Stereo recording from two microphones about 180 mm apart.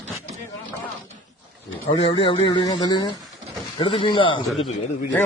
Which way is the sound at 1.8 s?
30° left (ahead or behind).